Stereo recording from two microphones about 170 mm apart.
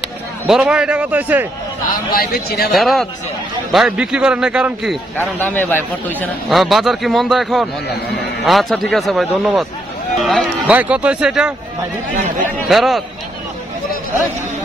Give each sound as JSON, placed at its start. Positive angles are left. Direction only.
{"t": 0.5, "sound": "a man's voice", "side_deg": -5}
{"t": 1.9, "sound": "a man's voice", "side_deg": 60}
{"t": 2.7, "sound": "a man's voice", "side_deg": 0}
{"t": 5.1, "sound": "a man's voice", "side_deg": 10}
{"t": 6.5, "sound": "a man's voice", "side_deg": 0}
{"t": 12.6, "sound": "a man's voice", "side_deg": 0}